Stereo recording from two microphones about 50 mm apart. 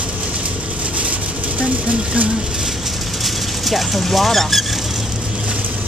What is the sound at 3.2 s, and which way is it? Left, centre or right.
Speech, centre.